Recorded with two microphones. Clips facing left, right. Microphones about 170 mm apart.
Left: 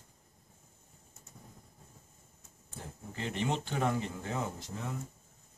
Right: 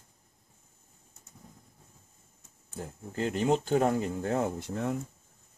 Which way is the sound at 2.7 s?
45° right (ahead or behind).